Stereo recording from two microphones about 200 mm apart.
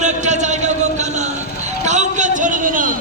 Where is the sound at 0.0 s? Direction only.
35° right (ahead or behind).